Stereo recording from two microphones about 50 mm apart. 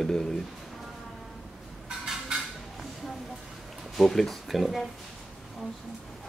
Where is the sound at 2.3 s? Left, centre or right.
Centre.